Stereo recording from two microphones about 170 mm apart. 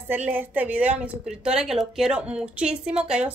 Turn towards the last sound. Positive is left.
turn(degrees=-5)  # may be behind; listen again after turning